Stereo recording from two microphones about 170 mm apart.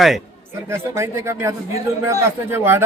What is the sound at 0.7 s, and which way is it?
Speech, 15° right (ahead or behind).